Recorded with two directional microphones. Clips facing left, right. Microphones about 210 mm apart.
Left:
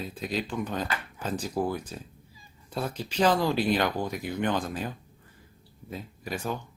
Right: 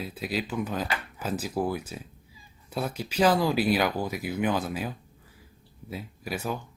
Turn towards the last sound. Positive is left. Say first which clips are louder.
# right 1 dB
turn(degrees=-5)  # may be behind; listen again after turning